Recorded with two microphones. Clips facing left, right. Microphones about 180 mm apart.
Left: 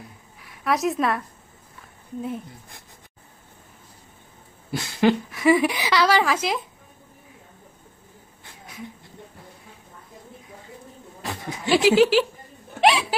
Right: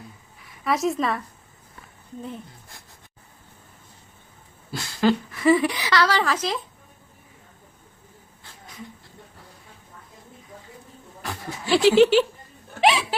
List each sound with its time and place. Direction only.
0.3 s a woman's voice: centre (ahead or behind)
4.8 s a woman's voice: 20° left (ahead or behind)
11.2 s a sound: 20° left (ahead or behind)
11.7 s speech: centre (ahead or behind)
12.8 s music: centre (ahead or behind)